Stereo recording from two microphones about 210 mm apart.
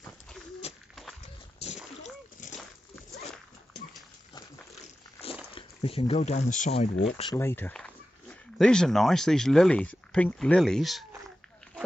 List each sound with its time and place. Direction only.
0.6 s a sound: 30° left (ahead or behind)
5.2 s speech: 25° left (ahead or behind)
7.3 s speech: 10° left (ahead or behind)